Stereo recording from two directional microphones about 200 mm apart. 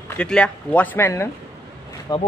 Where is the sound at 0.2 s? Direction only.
5° left (ahead or behind).